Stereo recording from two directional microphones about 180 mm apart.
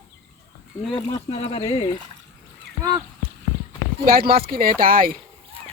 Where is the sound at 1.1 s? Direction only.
30° left (ahead or behind).